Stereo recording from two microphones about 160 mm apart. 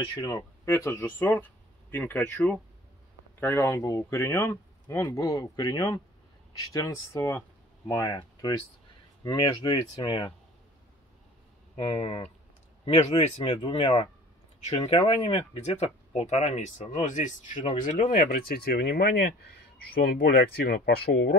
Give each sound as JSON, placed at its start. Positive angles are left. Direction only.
{"t": 0.1, "sound": "speech", "side_deg": 25}
{"t": 11.7, "sound": "speech", "side_deg": 40}